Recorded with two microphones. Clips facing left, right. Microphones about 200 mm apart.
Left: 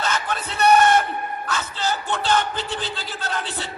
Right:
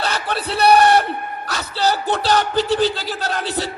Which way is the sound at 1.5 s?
35° right (ahead or behind).